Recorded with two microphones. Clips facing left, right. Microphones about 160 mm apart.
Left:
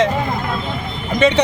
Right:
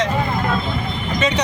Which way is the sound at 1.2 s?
30° left (ahead or behind).